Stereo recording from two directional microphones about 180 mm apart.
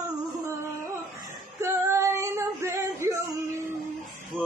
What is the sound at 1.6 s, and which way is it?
Female singing, 15° right (ahead or behind).